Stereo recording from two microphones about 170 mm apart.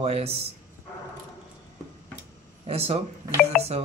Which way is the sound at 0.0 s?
35° right (ahead or behind).